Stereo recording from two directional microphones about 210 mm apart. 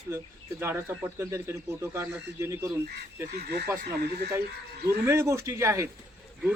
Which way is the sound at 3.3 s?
50° right (ahead or behind).